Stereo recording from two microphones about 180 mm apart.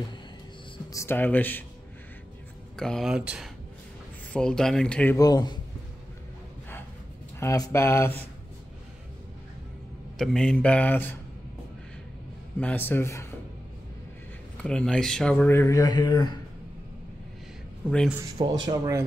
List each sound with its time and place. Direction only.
0.9 s speech: 10° left (ahead or behind)
2.8 s speech: centre (ahead or behind)
5.1 s a man's voice: 20° left (ahead or behind)
7.3 s speech: 15° left (ahead or behind)
10.1 s speech: 5° left (ahead or behind)
12.5 s speech: 10° left (ahead or behind)
14.6 s speech: 5° left (ahead or behind); by 16.3 s 25° left (ahead or behind)
17.8 s speech: 5° left (ahead or behind)
18.7 s speech: 15° right (ahead or behind)